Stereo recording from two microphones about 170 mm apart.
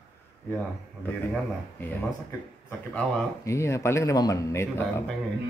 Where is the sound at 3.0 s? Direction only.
15° left (ahead or behind).